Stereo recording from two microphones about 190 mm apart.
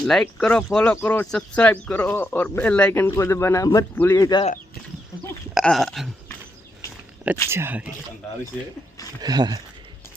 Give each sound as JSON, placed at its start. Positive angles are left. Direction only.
{"t": 0.0, "sound": "speech", "side_deg": 5}
{"t": 5.5, "sound": "a sound", "side_deg": 0}
{"t": 7.5, "sound": "speech", "side_deg": -10}
{"t": 9.2, "sound": "speech", "side_deg": -20}